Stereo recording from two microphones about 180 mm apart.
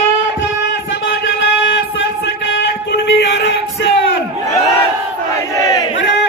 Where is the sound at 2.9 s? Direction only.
75° left (ahead or behind).